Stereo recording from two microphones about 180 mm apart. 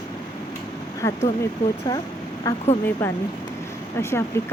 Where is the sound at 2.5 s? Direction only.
20° left (ahead or behind).